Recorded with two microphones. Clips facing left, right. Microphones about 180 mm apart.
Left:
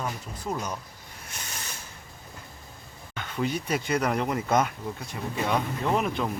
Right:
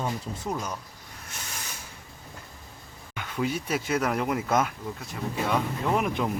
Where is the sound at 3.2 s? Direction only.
5° right (ahead or behind).